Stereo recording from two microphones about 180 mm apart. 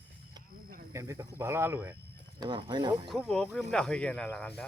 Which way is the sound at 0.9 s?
15° right (ahead or behind).